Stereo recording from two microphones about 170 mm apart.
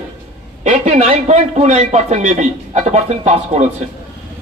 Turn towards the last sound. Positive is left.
turn(degrees=-40)  # may be behind; listen again after turning